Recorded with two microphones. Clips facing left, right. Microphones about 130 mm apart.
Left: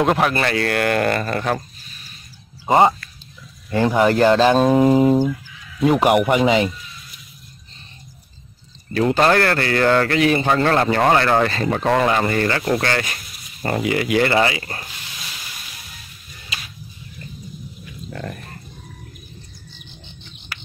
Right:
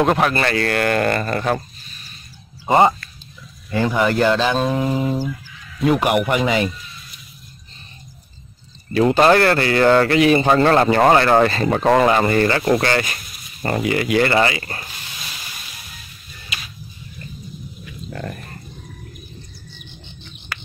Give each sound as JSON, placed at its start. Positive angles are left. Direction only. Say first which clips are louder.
{"t": 0.0, "sound": "speech", "louder": "right 1 dB", "side_deg": 0}
{"t": 2.6, "sound": "speech", "louder": "even", "side_deg": 5}
{"t": 3.7, "sound": "speech", "louder": "left 2 dB", "side_deg": 35}
{"t": 5.8, "sound": "a man's voice", "louder": "left 2 dB", "side_deg": 30}
{"t": 8.9, "sound": "speech", "louder": "right 3 dB", "side_deg": -15}
{"t": 11.7, "sound": "speech", "louder": "right 3 dB", "side_deg": -40}
{"t": 12.1, "sound": "speech", "louder": "right 3 dB", "side_deg": -20}
{"t": 13.6, "sound": "speech", "louder": "right 1 dB", "side_deg": 5}
{"t": 18.1, "sound": "speech", "louder": "right 1 dB", "side_deg": 0}